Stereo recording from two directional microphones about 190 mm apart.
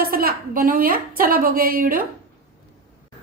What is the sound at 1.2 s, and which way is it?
Speech, 50° right (ahead or behind).